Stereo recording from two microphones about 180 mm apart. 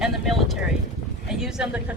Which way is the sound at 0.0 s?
Centre (ahead or behind).